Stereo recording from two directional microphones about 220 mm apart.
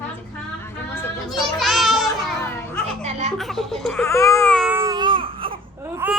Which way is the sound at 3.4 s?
Centre (ahead or behind).